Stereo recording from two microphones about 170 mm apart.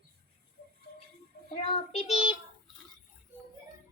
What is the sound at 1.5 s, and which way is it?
Child singing, 35° left (ahead or behind).